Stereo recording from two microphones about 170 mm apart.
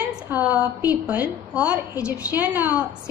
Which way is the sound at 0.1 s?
10° right (ahead or behind).